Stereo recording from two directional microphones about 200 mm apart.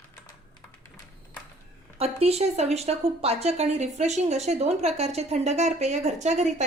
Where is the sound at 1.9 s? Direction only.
30° right (ahead or behind).